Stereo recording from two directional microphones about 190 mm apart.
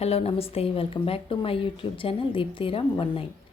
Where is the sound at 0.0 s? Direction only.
35° left (ahead or behind).